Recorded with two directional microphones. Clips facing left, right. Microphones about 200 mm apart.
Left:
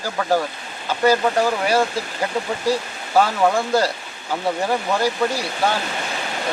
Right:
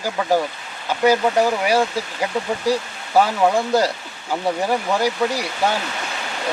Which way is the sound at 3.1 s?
15° right (ahead or behind).